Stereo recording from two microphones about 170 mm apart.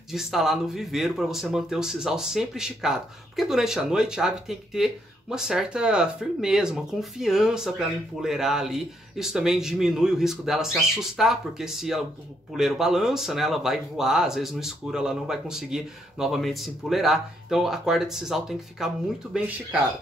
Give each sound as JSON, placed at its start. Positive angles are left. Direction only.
{"t": 0.1, "sound": "speech", "side_deg": 0}